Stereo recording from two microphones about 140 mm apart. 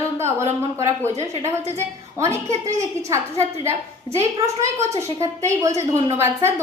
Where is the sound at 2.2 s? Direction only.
20° right (ahead or behind).